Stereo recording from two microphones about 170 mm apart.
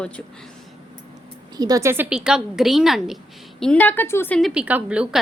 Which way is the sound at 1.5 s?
20° right (ahead or behind).